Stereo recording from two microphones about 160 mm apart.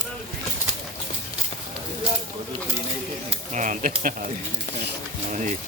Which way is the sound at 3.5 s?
50° right (ahead or behind).